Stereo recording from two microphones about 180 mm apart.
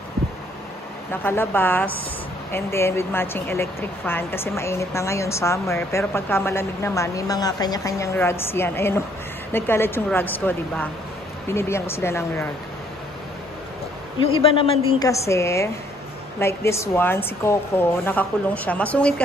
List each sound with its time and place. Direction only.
1.1 s speech: 10° left (ahead or behind)
14.2 s speech: 30° left (ahead or behind)
15.0 s speech: 15° left (ahead or behind)